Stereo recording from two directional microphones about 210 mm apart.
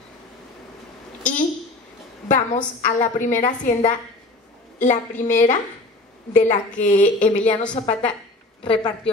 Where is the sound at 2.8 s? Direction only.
35° left (ahead or behind).